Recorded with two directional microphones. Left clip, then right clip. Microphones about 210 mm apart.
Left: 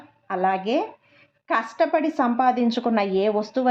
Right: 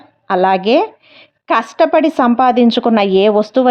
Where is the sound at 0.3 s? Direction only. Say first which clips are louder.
Right 11 dB; 40° right (ahead or behind).